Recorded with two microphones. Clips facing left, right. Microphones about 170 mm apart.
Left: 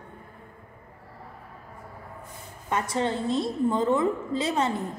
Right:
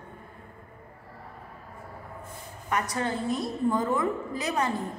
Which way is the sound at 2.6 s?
25° left (ahead or behind).